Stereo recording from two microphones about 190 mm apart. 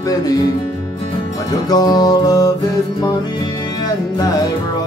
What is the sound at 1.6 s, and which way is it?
Music, 20° left (ahead or behind).